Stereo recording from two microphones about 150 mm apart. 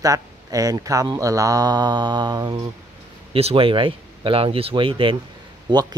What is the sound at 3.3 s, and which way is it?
A man's voice, 40° right (ahead or behind).